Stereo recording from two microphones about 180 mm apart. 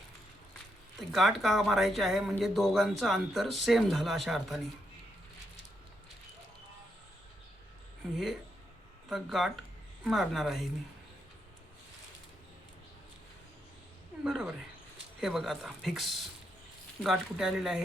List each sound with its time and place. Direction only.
0.9 s a man's voice: centre (ahead or behind)
8.1 s a man's voice: centre (ahead or behind)
14.3 s a man's voice: 5° right (ahead or behind)